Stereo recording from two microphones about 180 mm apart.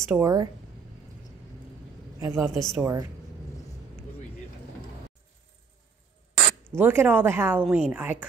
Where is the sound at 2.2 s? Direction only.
15° right (ahead or behind).